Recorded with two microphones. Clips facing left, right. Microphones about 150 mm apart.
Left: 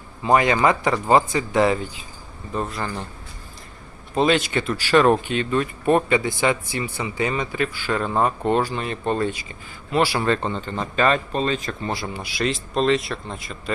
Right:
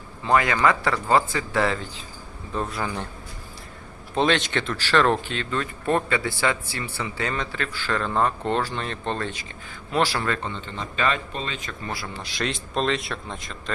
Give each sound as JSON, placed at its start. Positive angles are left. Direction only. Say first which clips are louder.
{"t": 0.3, "sound": "speech", "louder": "left 3 dB", "side_deg": 20}
{"t": 2.5, "sound": "speech", "louder": "left 1 dB", "side_deg": 0}
{"t": 4.1, "sound": "speech", "louder": "left 3 dB", "side_deg": 5}
{"t": 10.2, "sound": "speech", "louder": "left 6 dB", "side_deg": 35}
{"t": 11.9, "sound": "speech", "louder": "left 4 dB", "side_deg": 20}
{"t": 12.2, "sound": "speech", "louder": "left 4 dB", "side_deg": 5}